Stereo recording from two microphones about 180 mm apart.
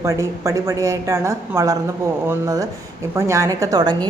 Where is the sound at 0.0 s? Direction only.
15° right (ahead or behind).